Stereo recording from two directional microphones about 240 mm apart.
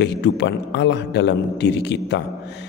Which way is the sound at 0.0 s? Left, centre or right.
Left.